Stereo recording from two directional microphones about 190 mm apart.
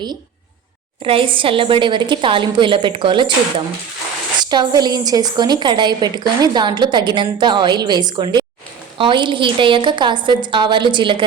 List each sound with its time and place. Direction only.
1.0 s a woman's voice: 30° right (ahead or behind)
4.4 s a woman's voice: 20° right (ahead or behind)